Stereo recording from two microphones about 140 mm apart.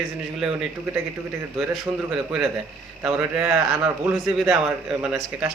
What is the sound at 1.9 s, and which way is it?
Speech, 30° right (ahead or behind).